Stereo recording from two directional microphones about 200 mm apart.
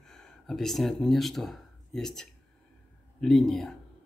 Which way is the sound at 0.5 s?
Centre (ahead or behind).